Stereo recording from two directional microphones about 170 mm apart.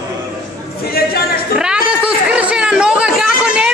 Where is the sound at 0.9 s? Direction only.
65° left (ahead or behind).